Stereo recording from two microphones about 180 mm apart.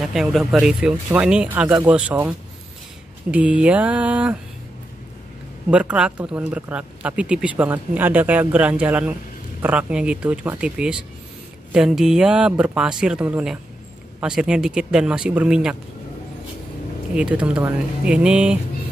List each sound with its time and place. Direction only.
0.0 s speech: centre (ahead or behind)
5.7 s speech: 5° right (ahead or behind)
17.1 s speech: 5° right (ahead or behind)